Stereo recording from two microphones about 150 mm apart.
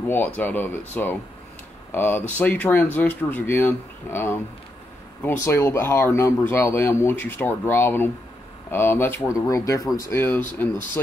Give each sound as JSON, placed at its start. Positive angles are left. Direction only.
{"t": 0.1, "sound": "speech", "side_deg": 10}